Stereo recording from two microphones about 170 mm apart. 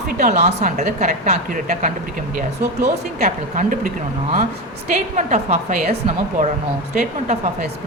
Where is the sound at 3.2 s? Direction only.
50° right (ahead or behind).